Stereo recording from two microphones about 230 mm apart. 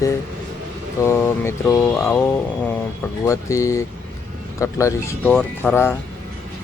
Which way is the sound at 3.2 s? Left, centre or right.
Centre.